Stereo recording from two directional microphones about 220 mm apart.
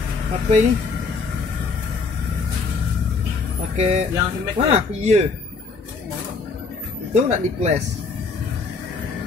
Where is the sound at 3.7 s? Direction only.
30° right (ahead or behind).